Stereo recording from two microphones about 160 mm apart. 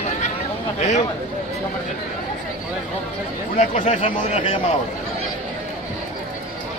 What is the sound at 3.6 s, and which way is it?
Speech, 45° left (ahead or behind).